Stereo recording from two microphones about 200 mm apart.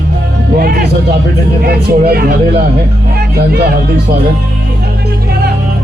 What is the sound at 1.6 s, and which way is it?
Speech, 50° right (ahead or behind).